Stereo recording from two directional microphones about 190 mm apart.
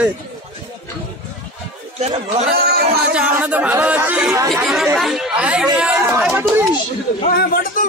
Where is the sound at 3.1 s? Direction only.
5° right (ahead or behind).